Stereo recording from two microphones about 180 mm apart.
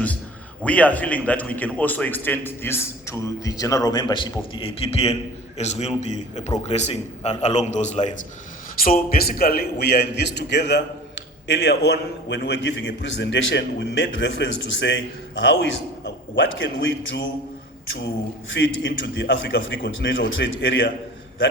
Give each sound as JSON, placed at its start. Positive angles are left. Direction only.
{"t": 0.6, "sound": "a man's voice", "side_deg": 10}
{"t": 8.8, "sound": "a man's voice", "side_deg": 55}
{"t": 18.5, "sound": "a man's voice", "side_deg": 80}